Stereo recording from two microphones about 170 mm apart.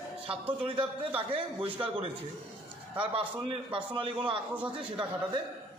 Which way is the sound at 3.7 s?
30° right (ahead or behind).